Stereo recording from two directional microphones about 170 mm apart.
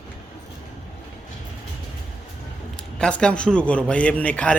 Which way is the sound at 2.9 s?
5° left (ahead or behind).